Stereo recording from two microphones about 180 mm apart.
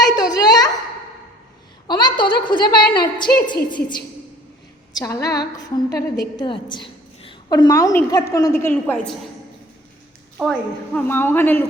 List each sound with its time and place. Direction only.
0.0 s a sound: 20° left (ahead or behind)
1.9 s a sound: 25° left (ahead or behind)
2.5 s a woman's voice: 25° left (ahead or behind)
4.9 s a woman's voice: 20° left (ahead or behind)
10.4 s a woman's voice: centre (ahead or behind)
10.9 s a man's voice: 10° left (ahead or behind)